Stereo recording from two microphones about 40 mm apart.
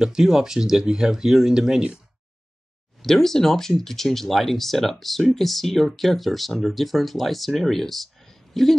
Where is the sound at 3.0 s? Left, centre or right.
Centre.